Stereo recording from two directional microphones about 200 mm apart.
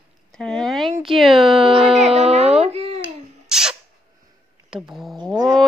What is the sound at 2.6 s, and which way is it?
Babbling, 30° right (ahead or behind).